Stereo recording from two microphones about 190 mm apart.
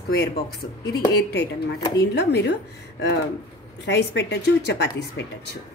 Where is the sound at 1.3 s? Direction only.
60° left (ahead or behind).